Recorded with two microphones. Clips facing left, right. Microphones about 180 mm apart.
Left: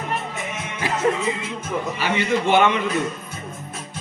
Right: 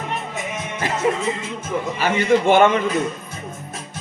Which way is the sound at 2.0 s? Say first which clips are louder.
Right 6 dB; 45° right (ahead or behind).